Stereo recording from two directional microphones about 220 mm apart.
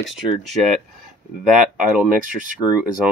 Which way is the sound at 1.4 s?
5° right (ahead or behind).